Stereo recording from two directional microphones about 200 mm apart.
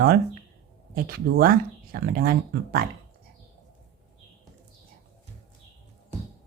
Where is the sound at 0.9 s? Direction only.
45° right (ahead or behind).